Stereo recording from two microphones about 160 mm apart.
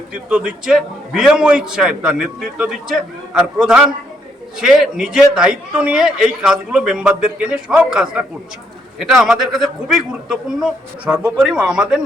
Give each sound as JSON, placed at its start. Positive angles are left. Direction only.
{"t": 0.1, "sound": "a man's voice", "side_deg": -5}